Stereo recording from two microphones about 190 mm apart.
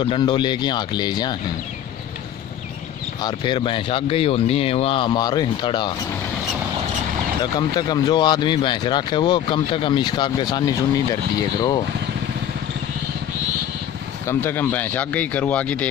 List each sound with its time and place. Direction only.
0.0 s speech: 25° left (ahead or behind)
3.2 s speech: 25° left (ahead or behind)
7.5 s speech: 20° left (ahead or behind)
14.2 s speech: 10° left (ahead or behind)